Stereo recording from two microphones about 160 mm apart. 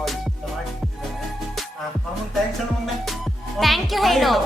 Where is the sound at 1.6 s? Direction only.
Centre (ahead or behind).